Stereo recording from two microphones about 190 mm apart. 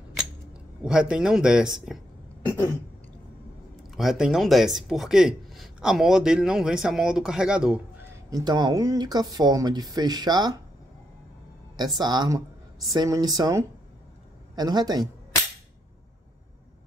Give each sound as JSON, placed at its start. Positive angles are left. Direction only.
{"t": 0.1, "sound": "camera", "side_deg": -5}
{"t": 2.4, "sound": "a sound", "side_deg": 15}
{"t": 3.9, "sound": "speech", "side_deg": 0}
{"t": 8.3, "sound": "speech", "side_deg": -20}
{"t": 11.7, "sound": "speech", "side_deg": -20}